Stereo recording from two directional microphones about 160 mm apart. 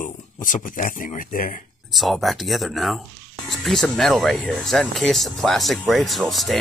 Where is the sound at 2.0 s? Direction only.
Centre (ahead or behind).